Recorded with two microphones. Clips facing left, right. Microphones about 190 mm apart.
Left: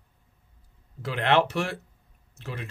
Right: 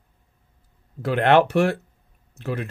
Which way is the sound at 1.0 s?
50° right (ahead or behind).